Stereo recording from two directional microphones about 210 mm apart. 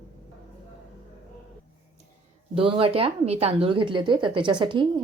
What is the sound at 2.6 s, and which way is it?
Speech, 25° right (ahead or behind).